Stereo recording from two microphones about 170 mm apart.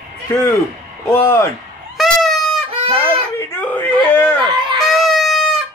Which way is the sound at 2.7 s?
35° right (ahead or behind).